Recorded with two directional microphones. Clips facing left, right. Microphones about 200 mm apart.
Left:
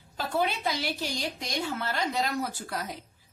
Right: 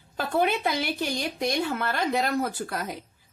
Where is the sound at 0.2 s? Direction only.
55° right (ahead or behind).